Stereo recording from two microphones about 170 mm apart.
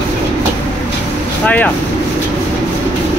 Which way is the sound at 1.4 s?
10° left (ahead or behind).